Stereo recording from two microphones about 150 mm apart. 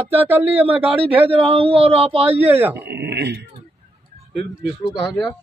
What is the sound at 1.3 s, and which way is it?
Speech, 40° right (ahead or behind).